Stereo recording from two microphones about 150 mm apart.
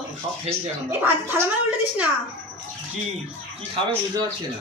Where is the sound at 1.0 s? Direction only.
15° right (ahead or behind).